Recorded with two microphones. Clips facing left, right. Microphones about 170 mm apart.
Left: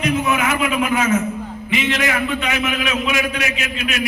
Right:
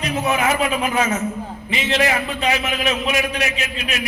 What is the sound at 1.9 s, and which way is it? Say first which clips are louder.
A man's voice: right 3 dB; 35° right (ahead or behind).